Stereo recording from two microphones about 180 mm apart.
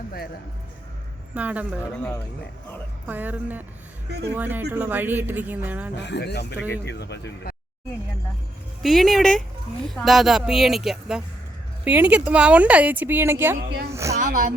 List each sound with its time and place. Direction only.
1.3 s speech: 10° right (ahead or behind)
3.1 s speech: 10° right (ahead or behind)
6.0 s speech: 70° left (ahead or behind)
8.8 s speech: centre (ahead or behind); by 14.2 s 15° right (ahead or behind)
14.2 s speech: 45° right (ahead or behind)